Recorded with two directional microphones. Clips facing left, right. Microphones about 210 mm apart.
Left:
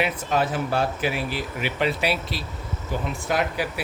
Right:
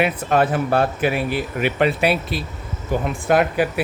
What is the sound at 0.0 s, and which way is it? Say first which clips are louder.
Speech: right 5 dB; 55° right (ahead or behind).